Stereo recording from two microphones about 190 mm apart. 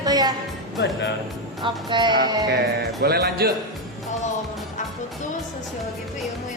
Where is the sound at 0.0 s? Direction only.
20° right (ahead or behind).